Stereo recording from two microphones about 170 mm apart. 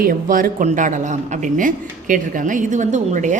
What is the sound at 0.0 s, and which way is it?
A woman's voice, 55° right (ahead or behind).